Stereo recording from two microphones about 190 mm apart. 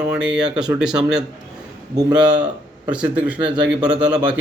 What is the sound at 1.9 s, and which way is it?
Speech, 20° right (ahead or behind).